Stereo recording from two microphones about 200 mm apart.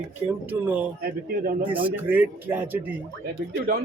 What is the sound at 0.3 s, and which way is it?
Speech, 10° right (ahead or behind).